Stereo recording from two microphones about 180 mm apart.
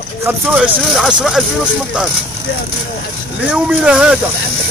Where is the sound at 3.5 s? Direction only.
5° right (ahead or behind).